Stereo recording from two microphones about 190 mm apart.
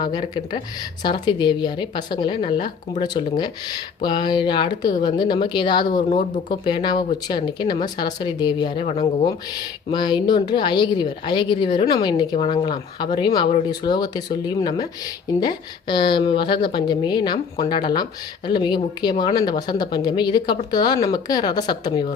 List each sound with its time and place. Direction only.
0.0 s speech: 25° left (ahead or behind)